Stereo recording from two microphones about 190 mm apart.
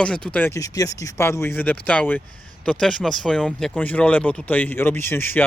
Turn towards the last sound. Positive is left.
turn(degrees=10)  # may be behind; listen again after turning